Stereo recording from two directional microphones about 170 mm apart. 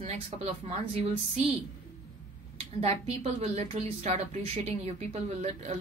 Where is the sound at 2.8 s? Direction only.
40° right (ahead or behind).